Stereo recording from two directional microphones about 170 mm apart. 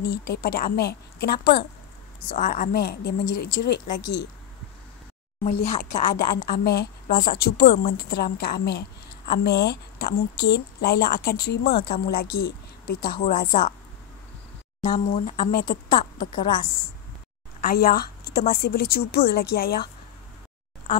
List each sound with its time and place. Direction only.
0.0 s a woman's voice: 65° left (ahead or behind)
2.3 s a woman's voice: 50° left (ahead or behind); by 3.4 s 75° left (ahead or behind)
3.6 s a woman's voice: 60° left (ahead or behind)
5.4 s speech: 45° left (ahead or behind)
5.8 s a woman's voice: 60° left (ahead or behind)
14.8 s speech: 45° left (ahead or behind)
15.5 s a woman's voice: 60° left (ahead or behind)
17.6 s a woman's voice: 60° left (ahead or behind)